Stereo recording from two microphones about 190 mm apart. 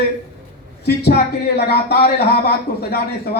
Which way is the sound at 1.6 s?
60° left (ahead or behind).